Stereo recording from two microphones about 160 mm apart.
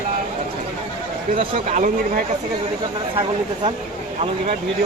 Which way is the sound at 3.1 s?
35° right (ahead or behind).